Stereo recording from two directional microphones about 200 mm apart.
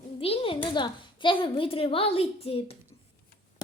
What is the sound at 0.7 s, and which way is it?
A woman's voice, 25° left (ahead or behind).